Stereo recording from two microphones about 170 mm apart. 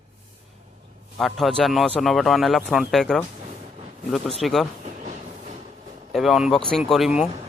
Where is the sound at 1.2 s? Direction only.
Centre (ahead or behind).